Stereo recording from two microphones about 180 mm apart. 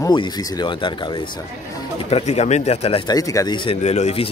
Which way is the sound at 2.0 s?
35° left (ahead or behind).